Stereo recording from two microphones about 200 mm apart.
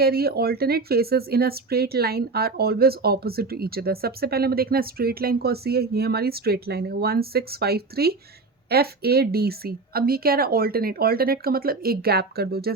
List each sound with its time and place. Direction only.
0.0 s speech: 50° right (ahead or behind)